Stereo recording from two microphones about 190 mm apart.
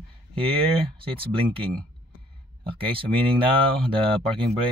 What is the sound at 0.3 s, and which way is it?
Speech, 30° right (ahead or behind).